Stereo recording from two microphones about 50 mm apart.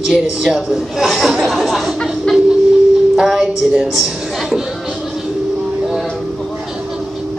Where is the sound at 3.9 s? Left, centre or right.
Centre.